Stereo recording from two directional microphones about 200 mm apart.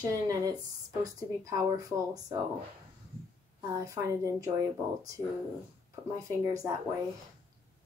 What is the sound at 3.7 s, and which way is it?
Speech, 15° right (ahead or behind).